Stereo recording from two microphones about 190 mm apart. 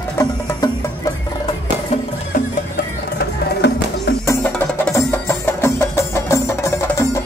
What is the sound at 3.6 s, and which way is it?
Music, 60° left (ahead or behind).